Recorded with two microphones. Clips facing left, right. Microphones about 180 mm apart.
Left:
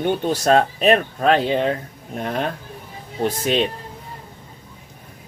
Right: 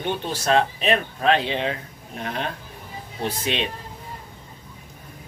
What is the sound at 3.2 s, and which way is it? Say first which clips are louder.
Speech: left 6 dB; 45° left (ahead or behind).